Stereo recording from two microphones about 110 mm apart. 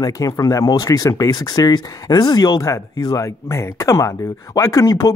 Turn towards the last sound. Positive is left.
turn(degrees=30)  # may be behind; listen again after turning